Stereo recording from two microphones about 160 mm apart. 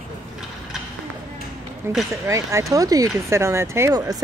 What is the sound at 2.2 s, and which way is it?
Speech, 20° right (ahead or behind).